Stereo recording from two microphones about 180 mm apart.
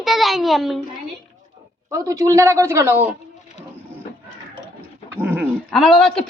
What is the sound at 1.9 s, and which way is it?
Speech, 15° right (ahead or behind).